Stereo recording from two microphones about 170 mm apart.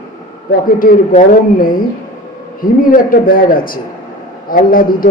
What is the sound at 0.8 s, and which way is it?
Speech, 55° left (ahead or behind).